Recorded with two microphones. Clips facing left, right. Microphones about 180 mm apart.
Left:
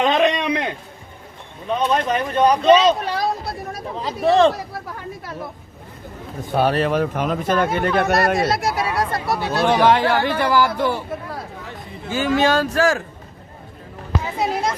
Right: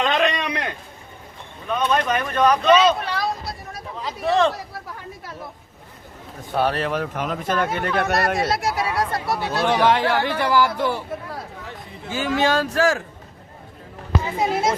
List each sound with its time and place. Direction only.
0.0 s a sound: 20° left (ahead or behind)
1.6 s speech: 25° left (ahead or behind); by 3.8 s 50° left (ahead or behind)
3.9 s speech: 30° left (ahead or behind)
4.9 s a sound: 65° left (ahead or behind)
6.5 s speech: 10° left (ahead or behind); by 8.3 s 30° left (ahead or behind)
8.4 s speech: 45° left (ahead or behind)
9.1 s speech: 90° left
9.5 s speech: 45° left (ahead or behind)
12.1 s speech: 45° left (ahead or behind)
14.3 s speech: centre (ahead or behind)